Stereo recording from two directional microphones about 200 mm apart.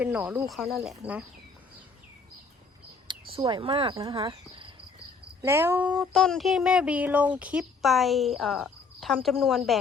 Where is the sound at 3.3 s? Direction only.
25° right (ahead or behind).